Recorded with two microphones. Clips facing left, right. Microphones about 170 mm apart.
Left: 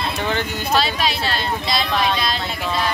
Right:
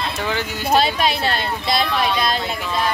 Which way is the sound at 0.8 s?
55° right (ahead or behind).